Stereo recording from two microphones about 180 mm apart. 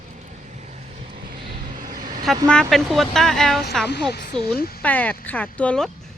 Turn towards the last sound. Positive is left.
turn(degrees=5)  # may be behind; listen again after turning